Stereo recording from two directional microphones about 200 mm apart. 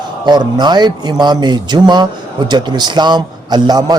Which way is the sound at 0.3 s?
20° right (ahead or behind).